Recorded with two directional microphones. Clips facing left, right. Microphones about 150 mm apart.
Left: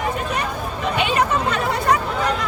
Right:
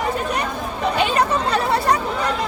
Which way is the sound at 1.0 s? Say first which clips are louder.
Even; 35° right (ahead or behind).